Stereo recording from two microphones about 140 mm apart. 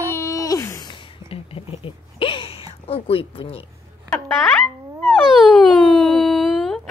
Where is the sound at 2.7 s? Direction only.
45° left (ahead or behind).